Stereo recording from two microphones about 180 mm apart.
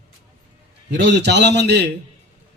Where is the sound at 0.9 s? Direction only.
75° right (ahead or behind).